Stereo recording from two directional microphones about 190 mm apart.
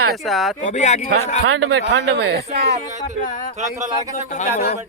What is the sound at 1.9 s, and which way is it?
Speech, 70° right (ahead or behind).